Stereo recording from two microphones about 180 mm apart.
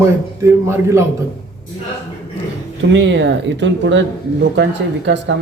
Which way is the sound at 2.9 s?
85° right.